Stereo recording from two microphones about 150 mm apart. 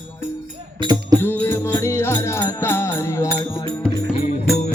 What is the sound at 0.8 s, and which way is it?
Music, 30° right (ahead or behind).